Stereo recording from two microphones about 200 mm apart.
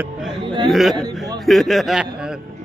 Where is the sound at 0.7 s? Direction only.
Centre (ahead or behind).